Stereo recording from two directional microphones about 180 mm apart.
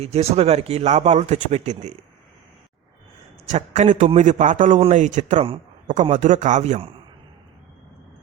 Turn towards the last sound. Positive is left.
turn(degrees=-35)  # may be behind; listen again after turning